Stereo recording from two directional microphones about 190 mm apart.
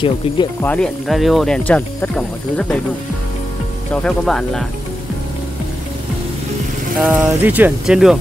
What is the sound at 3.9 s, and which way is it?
Speech, 5° left (ahead or behind).